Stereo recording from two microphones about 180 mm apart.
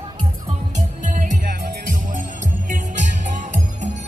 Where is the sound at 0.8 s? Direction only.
45° right (ahead or behind).